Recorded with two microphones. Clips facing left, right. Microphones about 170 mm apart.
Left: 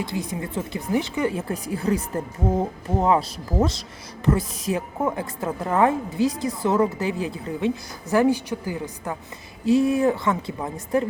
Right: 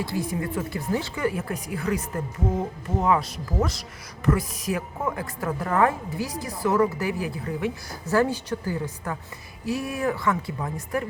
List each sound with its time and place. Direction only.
0.0 s speech: 20° left (ahead or behind)